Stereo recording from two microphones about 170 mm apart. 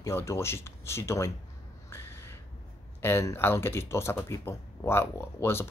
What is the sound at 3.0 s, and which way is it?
Speech, 15° left (ahead or behind).